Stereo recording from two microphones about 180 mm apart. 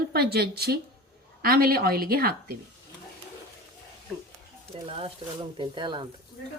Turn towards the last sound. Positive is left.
turn(degrees=-25)  # may be behind; listen again after turning